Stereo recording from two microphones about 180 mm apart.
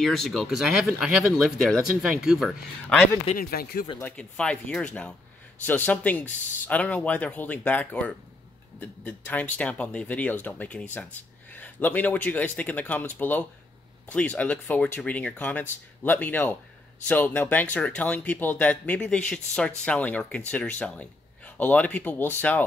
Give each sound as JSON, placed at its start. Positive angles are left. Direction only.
{"t": 0.0, "sound": "speech", "side_deg": 0}
{"t": 3.3, "sound": "speech", "side_deg": 55}
{"t": 4.0, "sound": "a man's voice", "side_deg": 5}